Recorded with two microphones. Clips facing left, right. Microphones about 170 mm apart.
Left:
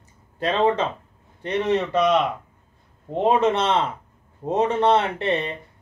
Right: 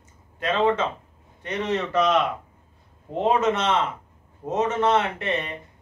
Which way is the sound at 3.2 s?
30° left (ahead or behind).